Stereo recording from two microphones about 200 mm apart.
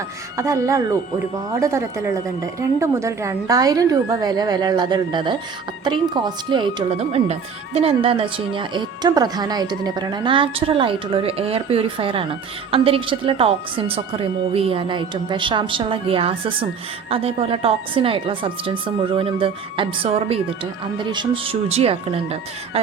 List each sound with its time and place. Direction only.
0.3 s a woman's voice: 15° right (ahead or behind)